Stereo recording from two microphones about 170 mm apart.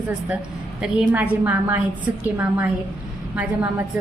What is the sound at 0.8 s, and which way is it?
A woman's voice, 5° right (ahead or behind).